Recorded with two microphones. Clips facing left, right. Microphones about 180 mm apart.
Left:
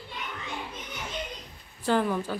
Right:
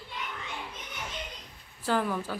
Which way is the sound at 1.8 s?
5° right (ahead or behind).